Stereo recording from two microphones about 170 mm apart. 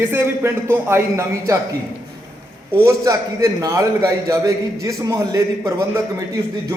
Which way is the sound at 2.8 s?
20° right (ahead or behind).